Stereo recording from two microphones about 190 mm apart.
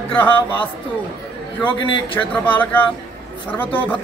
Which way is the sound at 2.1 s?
10° left (ahead or behind).